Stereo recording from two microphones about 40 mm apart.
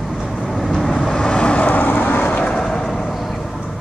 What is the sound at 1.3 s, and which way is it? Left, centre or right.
Vehicle, left.